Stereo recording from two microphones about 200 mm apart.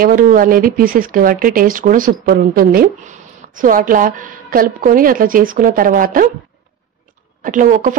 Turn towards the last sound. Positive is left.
turn(degrees=-40)  # may be behind; listen again after turning